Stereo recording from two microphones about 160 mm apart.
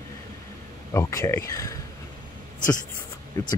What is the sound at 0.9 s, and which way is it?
Speech, 20° left (ahead or behind).